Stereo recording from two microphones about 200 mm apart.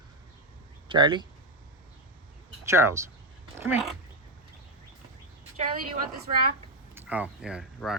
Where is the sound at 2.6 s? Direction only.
15° right (ahead or behind).